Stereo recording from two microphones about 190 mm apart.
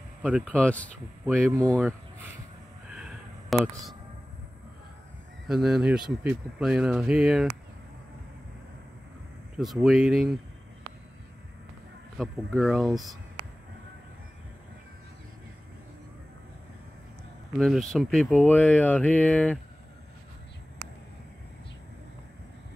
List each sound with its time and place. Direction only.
0.6 s speech: 5° left (ahead or behind)
1.2 s speech: 15° right (ahead or behind)
1.7 s speech: 5° left (ahead or behind)
2.9 s a sound: 5° right (ahead or behind)
5.5 s speech: 5° right (ahead or behind)
9.6 s speech: centre (ahead or behind)
12.2 s speech: centre (ahead or behind)
17.6 s speech: centre (ahead or behind)